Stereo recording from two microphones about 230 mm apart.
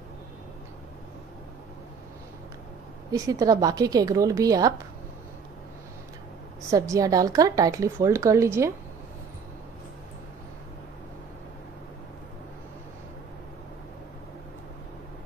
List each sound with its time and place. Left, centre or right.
3.1 s a woman's voice: centre
6.7 s a woman's voice: centre